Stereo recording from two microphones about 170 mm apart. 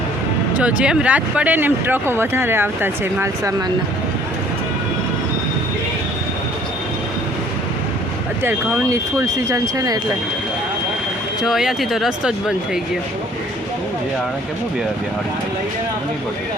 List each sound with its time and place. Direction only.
0.6 s speech: 5° right (ahead or behind)
8.4 s speech: 15° right (ahead or behind)
11.4 s speech: centre (ahead or behind)